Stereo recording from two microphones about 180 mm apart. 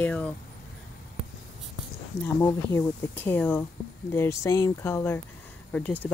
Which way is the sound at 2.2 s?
15° left (ahead or behind).